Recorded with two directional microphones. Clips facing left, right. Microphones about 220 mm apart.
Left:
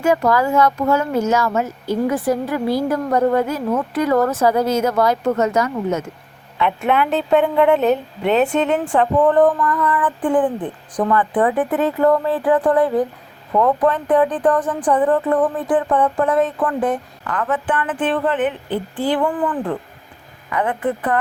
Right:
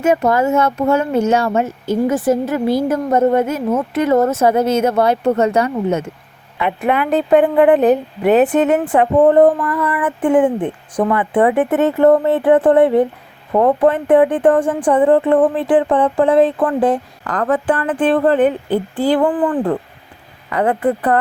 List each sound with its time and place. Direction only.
0.0 s speech: 20° right (ahead or behind)
6.7 s a woman's voice: centre (ahead or behind)
9.1 s speech: 25° right (ahead or behind)
9.6 s child singing: 10° right (ahead or behind)
10.0 s speech: 25° right (ahead or behind)
11.6 s speech: 25° right (ahead or behind)